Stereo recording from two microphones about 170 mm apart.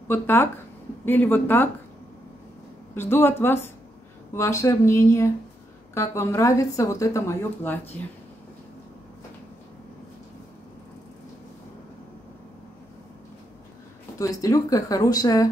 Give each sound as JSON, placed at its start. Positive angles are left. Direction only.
{"t": 0.1, "sound": "a woman's voice", "side_deg": 15}
{"t": 2.9, "sound": "a woman's voice", "side_deg": 15}
{"t": 14.1, "sound": "speech", "side_deg": 20}